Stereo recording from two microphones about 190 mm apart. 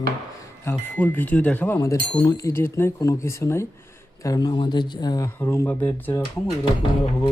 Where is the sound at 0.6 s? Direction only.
10° left (ahead or behind).